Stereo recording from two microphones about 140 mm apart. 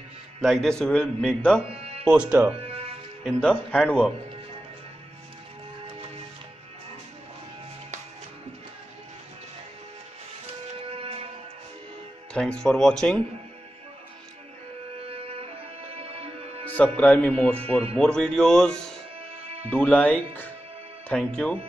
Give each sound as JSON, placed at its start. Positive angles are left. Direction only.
{"t": 0.4, "sound": "a man's voice", "side_deg": 0}
{"t": 2.0, "sound": "speech", "side_deg": -10}
{"t": 2.5, "sound": "music", "side_deg": -45}
{"t": 3.3, "sound": "speech", "side_deg": 5}
{"t": 10.8, "sound": "music", "side_deg": -45}
{"t": 12.4, "sound": "a man's voice", "side_deg": 5}
{"t": 15.0, "sound": "music", "side_deg": -45}
{"t": 16.6, "sound": "a man's voice", "side_deg": 10}
{"t": 19.1, "sound": "music", "side_deg": -45}
{"t": 19.7, "sound": "speech", "side_deg": 10}